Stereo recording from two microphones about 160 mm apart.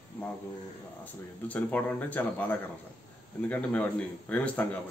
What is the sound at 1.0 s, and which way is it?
A man's voice, 10° left (ahead or behind).